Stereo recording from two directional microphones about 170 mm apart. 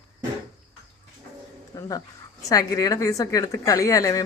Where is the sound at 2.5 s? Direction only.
20° left (ahead or behind).